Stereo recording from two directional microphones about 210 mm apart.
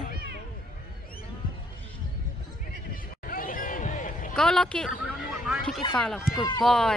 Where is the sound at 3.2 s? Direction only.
40° left (ahead or behind).